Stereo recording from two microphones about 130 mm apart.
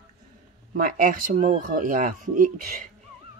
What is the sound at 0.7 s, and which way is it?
Speech, 90° right.